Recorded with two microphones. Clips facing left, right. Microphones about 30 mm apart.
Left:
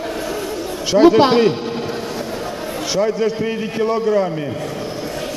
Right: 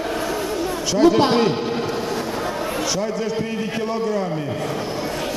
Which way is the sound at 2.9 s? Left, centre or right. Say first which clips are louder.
Left 5 dB; centre.